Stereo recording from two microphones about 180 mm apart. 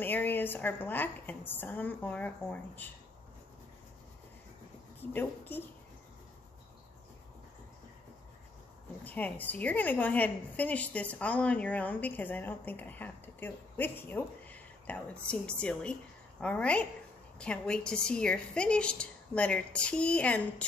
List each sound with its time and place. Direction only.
0.0 s a woman's voice: 10° left (ahead or behind)
5.1 s a woman's voice: 10° left (ahead or behind)
9.0 s a woman's voice: 10° left (ahead or behind)